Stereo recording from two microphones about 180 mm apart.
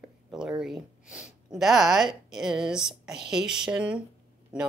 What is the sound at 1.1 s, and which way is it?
Speech, centre (ahead or behind).